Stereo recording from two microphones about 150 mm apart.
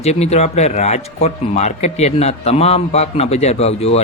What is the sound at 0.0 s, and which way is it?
A man's voice, 45° left (ahead or behind).